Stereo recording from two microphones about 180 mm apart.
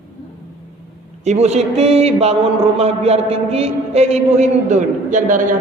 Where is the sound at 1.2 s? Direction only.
40° right (ahead or behind).